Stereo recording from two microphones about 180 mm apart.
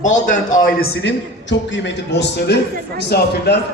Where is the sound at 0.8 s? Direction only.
75° left (ahead or behind).